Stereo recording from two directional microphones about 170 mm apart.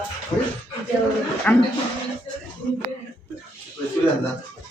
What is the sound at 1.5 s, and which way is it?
Speech, 10° left (ahead or behind).